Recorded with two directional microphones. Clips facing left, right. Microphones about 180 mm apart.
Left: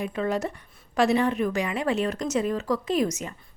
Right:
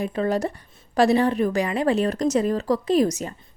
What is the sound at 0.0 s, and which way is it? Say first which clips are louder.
A woman's voice: right 4 dB; 35° right (ahead or behind).